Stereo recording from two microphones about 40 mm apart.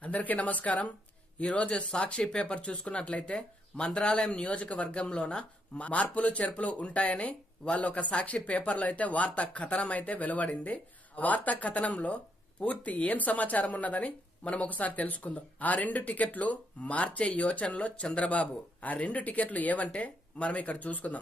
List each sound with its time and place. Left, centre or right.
0.0 s speech: left
18.3 s speech: left